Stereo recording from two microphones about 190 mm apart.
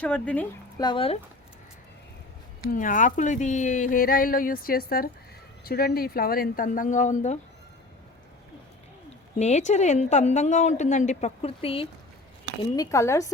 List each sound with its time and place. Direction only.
0.0 s speech: 5° left (ahead or behind)
0.8 s speech: 25° left (ahead or behind)
2.6 s speech: 45° left (ahead or behind)
9.4 s a woman's voice: 35° left (ahead or behind)
12.7 s speech: 15° left (ahead or behind)